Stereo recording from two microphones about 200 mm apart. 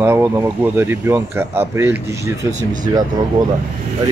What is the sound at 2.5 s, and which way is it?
Speech, 40° right (ahead or behind).